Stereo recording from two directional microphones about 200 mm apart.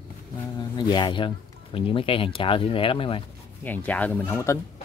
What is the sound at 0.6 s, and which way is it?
Speech, 20° left (ahead or behind).